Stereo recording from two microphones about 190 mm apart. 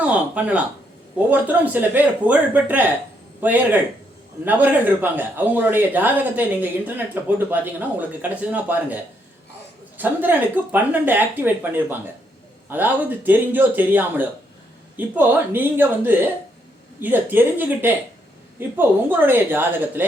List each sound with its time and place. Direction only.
0.0 s speech: 5° right (ahead or behind)
10.0 s speech: 10° right (ahead or behind)